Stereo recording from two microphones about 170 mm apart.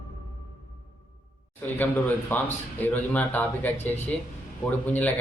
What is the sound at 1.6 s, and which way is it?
Speech, 10° left (ahead or behind).